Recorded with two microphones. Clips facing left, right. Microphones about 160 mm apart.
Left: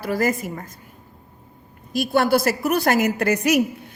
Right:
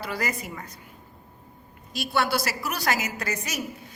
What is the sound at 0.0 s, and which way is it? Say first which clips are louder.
Speech: left 9 dB; 45° left (ahead or behind).